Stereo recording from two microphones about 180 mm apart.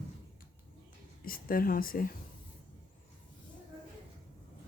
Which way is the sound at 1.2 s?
55° left (ahead or behind).